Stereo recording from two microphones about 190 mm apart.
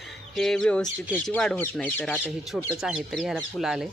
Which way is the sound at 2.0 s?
5° right (ahead or behind).